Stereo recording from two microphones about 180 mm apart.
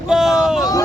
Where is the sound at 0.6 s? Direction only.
20° left (ahead or behind).